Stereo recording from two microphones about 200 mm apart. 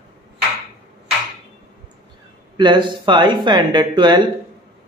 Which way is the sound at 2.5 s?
25° right (ahead or behind).